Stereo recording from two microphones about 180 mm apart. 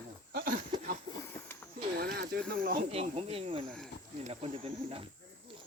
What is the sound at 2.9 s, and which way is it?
Speech, 35° right (ahead or behind).